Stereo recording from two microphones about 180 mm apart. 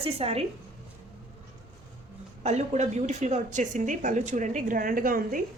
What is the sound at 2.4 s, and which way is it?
A woman's voice, 40° right (ahead or behind).